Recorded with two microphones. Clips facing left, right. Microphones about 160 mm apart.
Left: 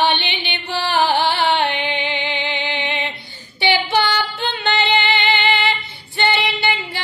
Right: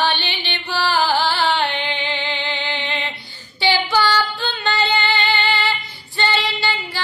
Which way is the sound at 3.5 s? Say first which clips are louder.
Left 1 dB; 20° left (ahead or behind).